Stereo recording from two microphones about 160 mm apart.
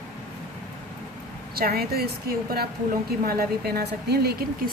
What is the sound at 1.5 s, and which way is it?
A woman's voice, 70° right (ahead or behind).